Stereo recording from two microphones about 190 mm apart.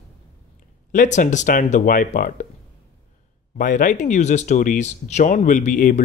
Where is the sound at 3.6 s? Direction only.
45° left (ahead or behind).